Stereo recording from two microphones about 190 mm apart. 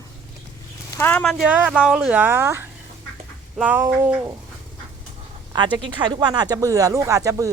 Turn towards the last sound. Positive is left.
turn(degrees=-15)  # may be behind; listen again after turning